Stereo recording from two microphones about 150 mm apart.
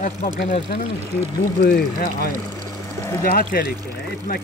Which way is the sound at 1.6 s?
90° left.